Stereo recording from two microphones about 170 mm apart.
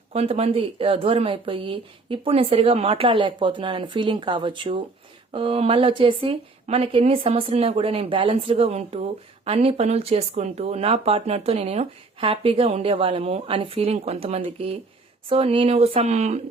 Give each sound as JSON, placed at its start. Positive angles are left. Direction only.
{"t": 0.1, "sound": "a woman's voice", "side_deg": -35}